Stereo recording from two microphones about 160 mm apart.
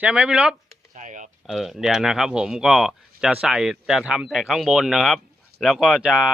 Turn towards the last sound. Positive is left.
turn(degrees=-5)  # may be behind; listen again after turning